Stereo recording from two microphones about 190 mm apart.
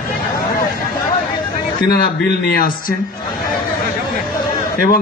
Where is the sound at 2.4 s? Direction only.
50° left (ahead or behind).